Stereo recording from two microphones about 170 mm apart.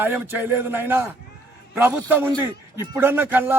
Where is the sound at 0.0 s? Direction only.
10° right (ahead or behind).